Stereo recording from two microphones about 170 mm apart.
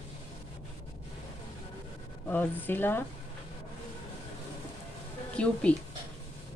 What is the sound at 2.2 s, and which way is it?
Speech, 10° left (ahead or behind).